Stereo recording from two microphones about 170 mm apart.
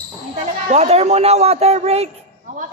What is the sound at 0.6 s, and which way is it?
Speech, 40° right (ahead or behind).